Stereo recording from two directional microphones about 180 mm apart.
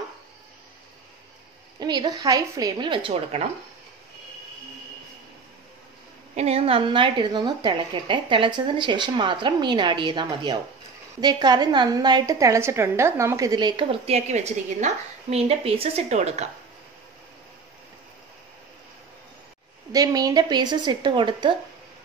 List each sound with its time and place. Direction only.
1.8 s a woman's voice: 25° right (ahead or behind)
6.3 s a woman's voice: 35° right (ahead or behind)
19.9 s a woman's voice: 20° right (ahead or behind)